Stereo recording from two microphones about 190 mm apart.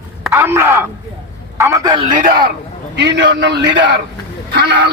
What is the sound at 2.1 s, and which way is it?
Speech, 45° right (ahead or behind).